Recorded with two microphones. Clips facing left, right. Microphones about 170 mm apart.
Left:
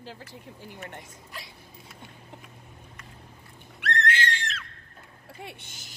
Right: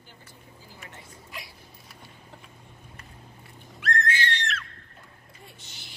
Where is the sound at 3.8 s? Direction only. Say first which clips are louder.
Even; 70° left (ahead or behind).